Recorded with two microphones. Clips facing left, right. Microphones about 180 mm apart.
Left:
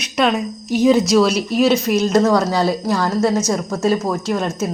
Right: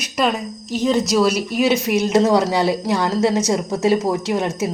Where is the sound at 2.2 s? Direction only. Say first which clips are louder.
Even; 15° right (ahead or behind).